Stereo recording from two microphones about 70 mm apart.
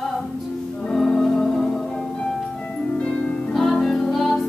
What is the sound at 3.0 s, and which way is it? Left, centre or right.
Music, centre.